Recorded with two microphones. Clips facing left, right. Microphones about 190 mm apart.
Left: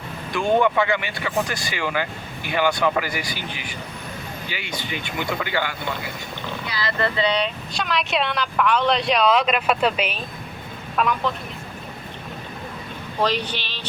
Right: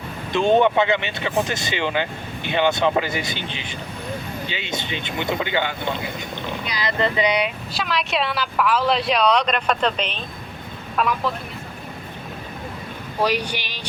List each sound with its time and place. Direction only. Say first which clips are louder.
0.3 s speech: right 3 dB; 25° right (ahead or behind); by 11.3 s centre (ahead or behind)
13.2 s speech: right 1 dB; 10° right (ahead or behind)